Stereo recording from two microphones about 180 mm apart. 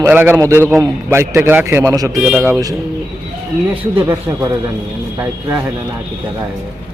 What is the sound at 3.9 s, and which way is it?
A man's voice, 10° right (ahead or behind).